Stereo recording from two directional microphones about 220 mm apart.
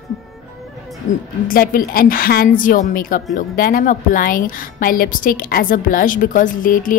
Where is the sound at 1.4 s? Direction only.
40° left (ahead or behind).